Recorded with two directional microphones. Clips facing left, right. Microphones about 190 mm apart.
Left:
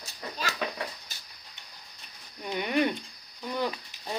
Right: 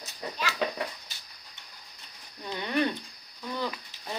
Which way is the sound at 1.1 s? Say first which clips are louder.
Left 1 dB; 45° left (ahead or behind).